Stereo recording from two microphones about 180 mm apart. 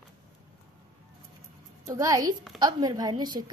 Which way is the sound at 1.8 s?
20° right (ahead or behind).